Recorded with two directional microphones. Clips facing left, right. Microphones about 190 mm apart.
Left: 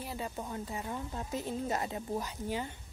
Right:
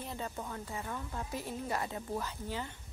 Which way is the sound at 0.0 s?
10° left (ahead or behind).